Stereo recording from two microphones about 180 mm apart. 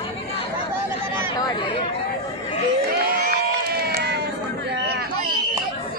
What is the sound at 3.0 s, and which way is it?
Crowd, 60° right (ahead or behind).